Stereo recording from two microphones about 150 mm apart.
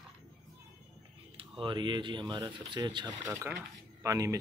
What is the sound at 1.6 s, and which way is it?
Speech, 30° right (ahead or behind).